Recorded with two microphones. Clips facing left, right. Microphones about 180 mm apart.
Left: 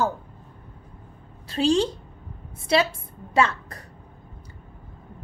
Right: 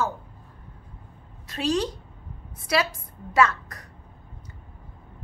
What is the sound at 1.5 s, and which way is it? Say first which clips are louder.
A woman's voice: left 4 dB; 30° left (ahead or behind).